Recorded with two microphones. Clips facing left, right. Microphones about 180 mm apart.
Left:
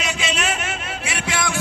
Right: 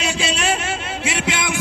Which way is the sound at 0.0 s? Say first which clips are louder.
Right 3 dB; 30° right (ahead or behind).